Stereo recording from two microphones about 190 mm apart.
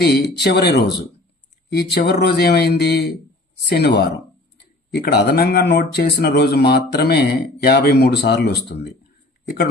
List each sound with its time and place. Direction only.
0.0 s speech: 60° left (ahead or behind)